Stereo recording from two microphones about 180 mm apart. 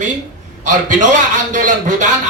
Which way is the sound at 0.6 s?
45° right (ahead or behind).